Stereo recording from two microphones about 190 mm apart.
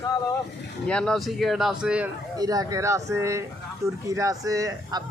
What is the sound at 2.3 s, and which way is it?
Speech, 20° right (ahead or behind).